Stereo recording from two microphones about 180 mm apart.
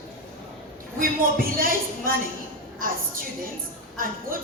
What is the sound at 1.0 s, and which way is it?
A woman's voice, 50° right (ahead or behind).